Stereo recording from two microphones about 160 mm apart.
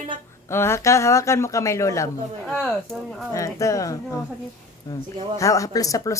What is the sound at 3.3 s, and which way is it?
Speech, 20° left (ahead or behind).